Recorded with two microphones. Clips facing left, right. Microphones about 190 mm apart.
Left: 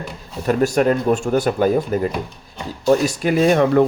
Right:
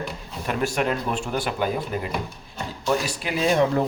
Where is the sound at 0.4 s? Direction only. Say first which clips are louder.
Left 8 dB; 40° left (ahead or behind).